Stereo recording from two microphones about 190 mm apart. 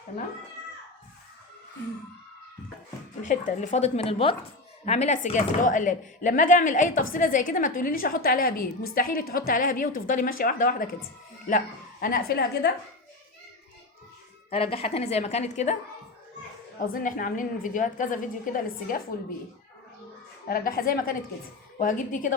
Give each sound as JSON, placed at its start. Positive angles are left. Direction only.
{"t": 3.2, "sound": "a woman's voice", "side_deg": 40}
{"t": 14.5, "sound": "speech", "side_deg": 30}
{"t": 16.8, "sound": "a woman's voice", "side_deg": 45}
{"t": 20.5, "sound": "a woman's voice", "side_deg": 50}